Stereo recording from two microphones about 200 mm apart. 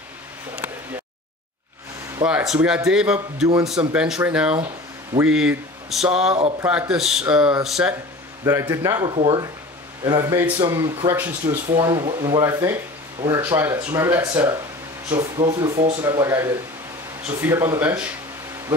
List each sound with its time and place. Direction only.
2.2 s speech: 5° right (ahead or behind)
8.5 s speech: 15° right (ahead or behind)